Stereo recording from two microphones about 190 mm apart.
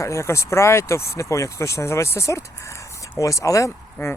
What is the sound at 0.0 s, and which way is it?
Speech, 15° left (ahead or behind).